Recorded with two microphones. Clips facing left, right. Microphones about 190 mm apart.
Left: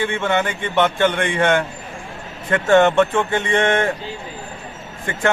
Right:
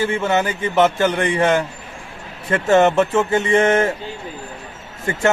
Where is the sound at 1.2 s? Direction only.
35° right (ahead or behind).